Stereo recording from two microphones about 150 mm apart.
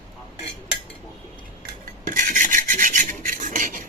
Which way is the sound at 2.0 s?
60° right (ahead or behind).